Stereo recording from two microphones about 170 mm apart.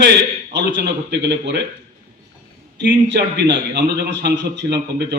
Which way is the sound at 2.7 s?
90° right.